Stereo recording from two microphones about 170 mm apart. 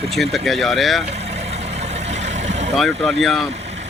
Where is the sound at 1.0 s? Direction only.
40° right (ahead or behind).